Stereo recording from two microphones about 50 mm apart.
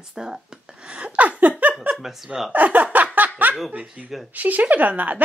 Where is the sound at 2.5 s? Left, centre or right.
Right.